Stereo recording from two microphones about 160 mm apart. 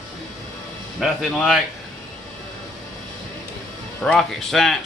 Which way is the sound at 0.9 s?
Centre (ahead or behind).